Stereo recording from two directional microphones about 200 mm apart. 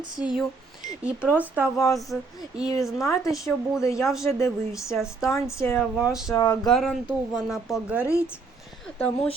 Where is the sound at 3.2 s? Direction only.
Centre (ahead or behind).